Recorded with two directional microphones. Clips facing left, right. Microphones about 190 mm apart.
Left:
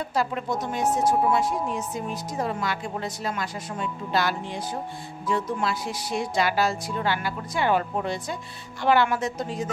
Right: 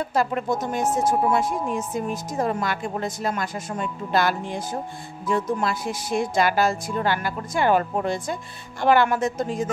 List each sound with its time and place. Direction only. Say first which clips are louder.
0.1 s a woman's voice: right 3 dB; 50° right (ahead or behind)